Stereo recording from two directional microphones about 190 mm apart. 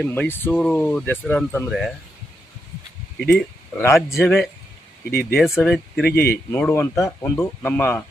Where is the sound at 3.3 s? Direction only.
5° left (ahead or behind).